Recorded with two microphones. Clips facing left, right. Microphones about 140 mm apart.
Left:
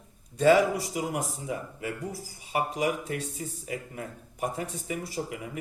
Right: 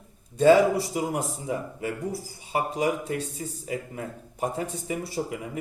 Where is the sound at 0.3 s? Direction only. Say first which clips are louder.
Right 3 dB; 30° right (ahead or behind).